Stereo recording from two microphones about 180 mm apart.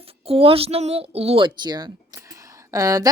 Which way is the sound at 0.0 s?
30° right (ahead or behind).